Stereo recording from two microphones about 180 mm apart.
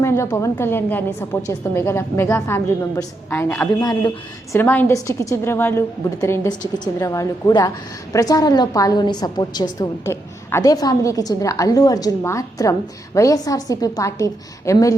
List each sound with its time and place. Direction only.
0.0 s a woman's voice: 15° left (ahead or behind)